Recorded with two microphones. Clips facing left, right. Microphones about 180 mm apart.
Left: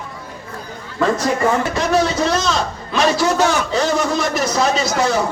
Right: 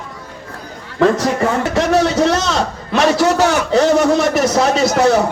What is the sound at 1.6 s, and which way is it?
A man's voice, 70° right (ahead or behind).